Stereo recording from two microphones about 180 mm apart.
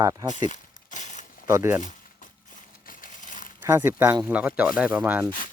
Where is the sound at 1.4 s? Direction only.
15° right (ahead or behind).